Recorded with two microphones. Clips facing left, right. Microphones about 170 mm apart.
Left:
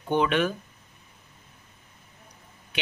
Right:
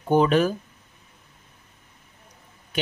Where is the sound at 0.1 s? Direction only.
40° right (ahead or behind).